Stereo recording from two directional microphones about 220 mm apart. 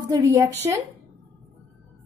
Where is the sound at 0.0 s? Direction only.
15° right (ahead or behind).